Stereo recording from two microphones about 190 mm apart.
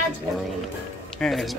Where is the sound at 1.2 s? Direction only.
5° left (ahead or behind).